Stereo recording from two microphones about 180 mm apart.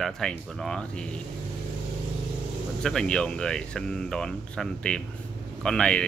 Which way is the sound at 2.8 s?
5° left (ahead or behind).